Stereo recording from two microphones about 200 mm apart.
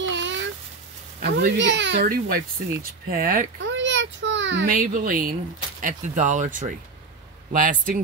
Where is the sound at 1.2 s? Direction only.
60° right (ahead or behind).